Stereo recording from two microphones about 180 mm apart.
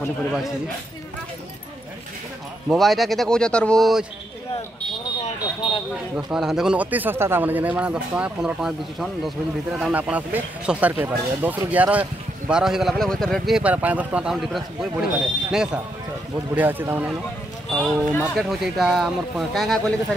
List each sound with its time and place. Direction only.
2.7 s speech: centre (ahead or behind)
6.1 s speech: 5° right (ahead or behind)